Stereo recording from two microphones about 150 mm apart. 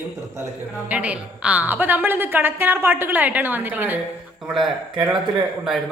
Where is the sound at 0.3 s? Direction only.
20° right (ahead or behind).